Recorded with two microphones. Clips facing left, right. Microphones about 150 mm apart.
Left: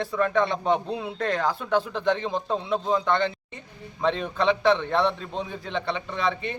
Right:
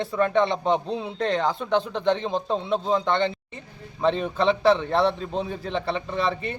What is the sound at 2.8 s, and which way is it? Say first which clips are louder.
Speech: right 1 dB; 25° right (ahead or behind).